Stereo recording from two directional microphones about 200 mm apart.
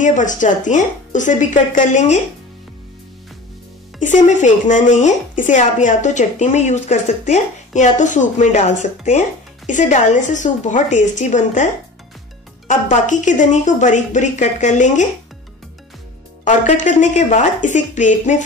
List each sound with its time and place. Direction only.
0.0 s speech: 40° left (ahead or behind)
4.0 s speech: 35° left (ahead or behind)
12.6 s speech: 40° left (ahead or behind)
16.4 s speech: 40° left (ahead or behind)